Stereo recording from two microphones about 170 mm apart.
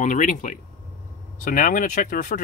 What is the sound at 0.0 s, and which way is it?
Speech, 50° left (ahead or behind).